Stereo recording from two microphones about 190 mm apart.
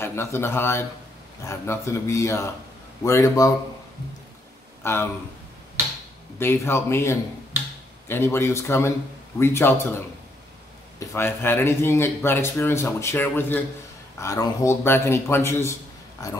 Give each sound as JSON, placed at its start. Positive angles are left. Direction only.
{"t": 0.0, "sound": "speech", "side_deg": 15}
{"t": 4.8, "sound": "speech", "side_deg": 15}
{"t": 6.4, "sound": "speech", "side_deg": 10}